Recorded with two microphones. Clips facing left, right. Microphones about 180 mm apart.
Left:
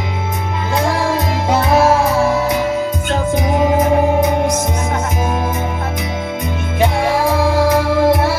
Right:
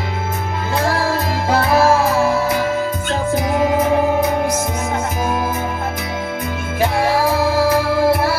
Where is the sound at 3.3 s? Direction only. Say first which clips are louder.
Left 1 dB; 20° left (ahead or behind).